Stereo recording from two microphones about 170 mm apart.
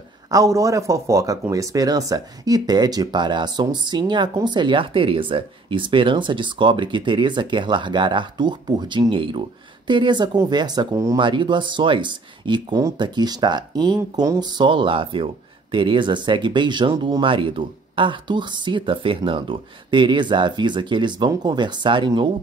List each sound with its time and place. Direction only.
0.3 s speech: 20° right (ahead or behind)